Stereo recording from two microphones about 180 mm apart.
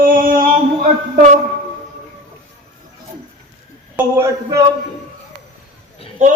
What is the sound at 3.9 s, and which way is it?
Speech, 15° right (ahead or behind).